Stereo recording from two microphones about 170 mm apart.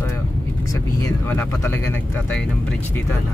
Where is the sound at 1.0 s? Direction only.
15° left (ahead or behind).